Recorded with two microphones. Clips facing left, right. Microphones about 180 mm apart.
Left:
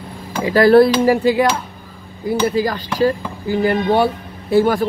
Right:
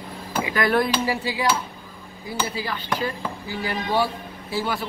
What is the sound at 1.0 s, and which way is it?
Speech, 55° left (ahead or behind).